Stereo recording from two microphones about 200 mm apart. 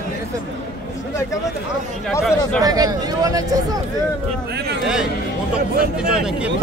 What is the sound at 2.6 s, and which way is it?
Speech, 20° right (ahead or behind).